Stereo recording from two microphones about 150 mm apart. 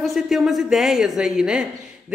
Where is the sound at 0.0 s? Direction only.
Centre (ahead or behind).